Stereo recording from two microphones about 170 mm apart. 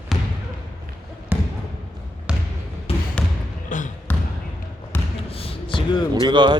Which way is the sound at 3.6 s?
50° left (ahead or behind).